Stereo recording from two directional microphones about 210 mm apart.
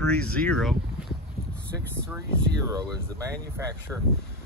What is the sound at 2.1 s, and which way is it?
Speech, 15° right (ahead or behind).